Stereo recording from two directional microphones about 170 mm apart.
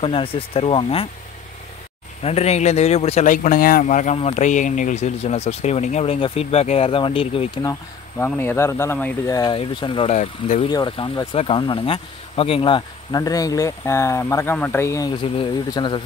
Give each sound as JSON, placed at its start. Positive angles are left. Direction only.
{"t": 0.0, "sound": "speech", "side_deg": 30}
{"t": 2.2, "sound": "speech", "side_deg": 40}
{"t": 8.4, "sound": "speech", "side_deg": 15}
{"t": 9.3, "sound": "speech", "side_deg": 25}